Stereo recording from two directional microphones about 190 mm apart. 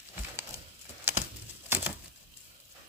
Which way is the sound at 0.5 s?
15° right (ahead or behind).